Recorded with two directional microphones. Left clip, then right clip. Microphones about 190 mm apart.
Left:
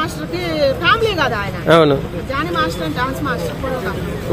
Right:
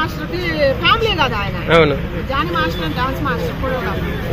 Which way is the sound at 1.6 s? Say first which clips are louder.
Left 2 dB; 65° left (ahead or behind).